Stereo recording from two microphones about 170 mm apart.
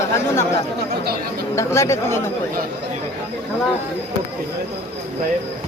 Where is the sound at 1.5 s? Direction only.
15° left (ahead or behind).